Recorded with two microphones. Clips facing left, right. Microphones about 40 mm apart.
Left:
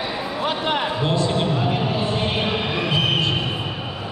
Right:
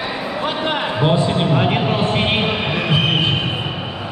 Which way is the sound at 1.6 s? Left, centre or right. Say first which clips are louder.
Right 4 dB; right.